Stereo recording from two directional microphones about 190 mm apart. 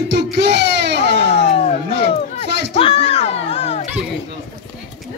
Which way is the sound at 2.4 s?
65° right (ahead or behind).